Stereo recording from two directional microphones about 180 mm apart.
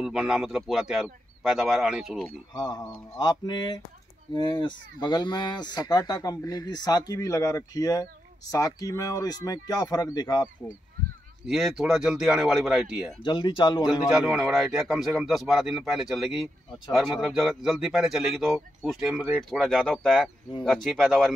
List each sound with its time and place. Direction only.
0.0 s speech: 5° right (ahead or behind)
2.2 s speech: 20° left (ahead or behind)
11.4 s speech: centre (ahead or behind)
13.2 s speech: 25° left (ahead or behind)
14.0 s speech: 5° right (ahead or behind)